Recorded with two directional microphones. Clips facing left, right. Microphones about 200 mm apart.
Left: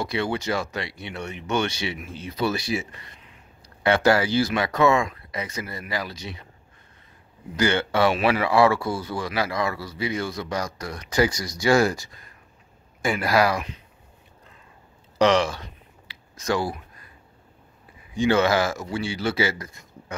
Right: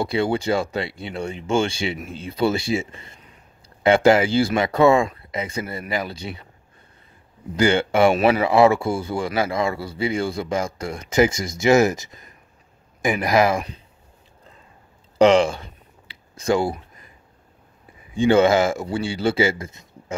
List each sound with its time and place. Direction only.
0.0 s a man's voice: 30° right (ahead or behind)
7.5 s a man's voice: 30° right (ahead or behind)
15.1 s a man's voice: 25° right (ahead or behind)
16.1 s a sound: 30° right (ahead or behind)
18.2 s a man's voice: 25° right (ahead or behind)